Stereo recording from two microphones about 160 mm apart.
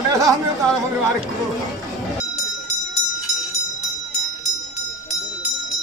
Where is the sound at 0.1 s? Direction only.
20° right (ahead or behind).